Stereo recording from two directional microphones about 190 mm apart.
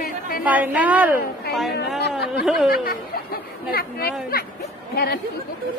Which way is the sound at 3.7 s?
55° left (ahead or behind).